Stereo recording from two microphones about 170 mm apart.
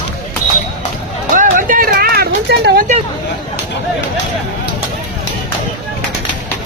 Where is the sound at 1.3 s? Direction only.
50° right (ahead or behind); by 2.8 s 70° right (ahead or behind).